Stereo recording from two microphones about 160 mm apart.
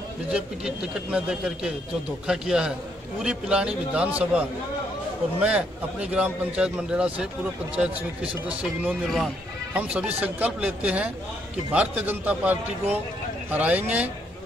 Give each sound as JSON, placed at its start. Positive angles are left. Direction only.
{"t": 0.3, "sound": "a man's voice", "side_deg": -5}
{"t": 9.8, "sound": "a man's voice", "side_deg": -5}